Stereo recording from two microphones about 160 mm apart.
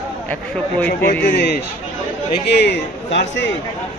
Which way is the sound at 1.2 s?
90° left.